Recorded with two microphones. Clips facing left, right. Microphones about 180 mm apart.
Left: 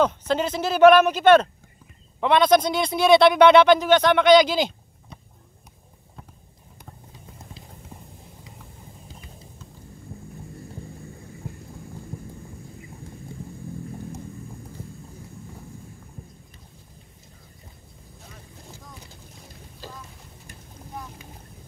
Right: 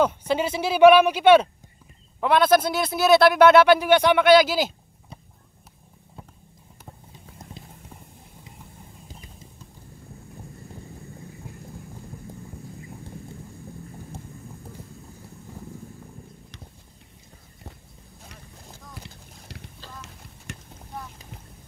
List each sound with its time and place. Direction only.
0.0 s speech: 10° right (ahead or behind)
19.4 s a sound: 75° right (ahead or behind)
20.5 s boat: 75° right (ahead or behind)